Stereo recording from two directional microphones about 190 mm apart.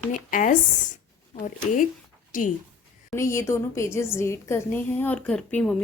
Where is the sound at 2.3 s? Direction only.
45° left (ahead or behind).